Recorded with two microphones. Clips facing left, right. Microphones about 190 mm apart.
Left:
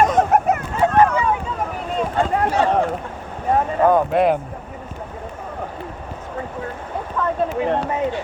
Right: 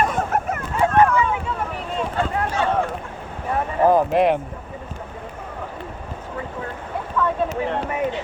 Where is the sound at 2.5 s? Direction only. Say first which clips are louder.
Left 4 dB; 35° left (ahead or behind).